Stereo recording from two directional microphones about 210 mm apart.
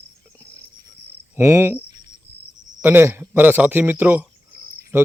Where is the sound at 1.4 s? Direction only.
10° right (ahead or behind).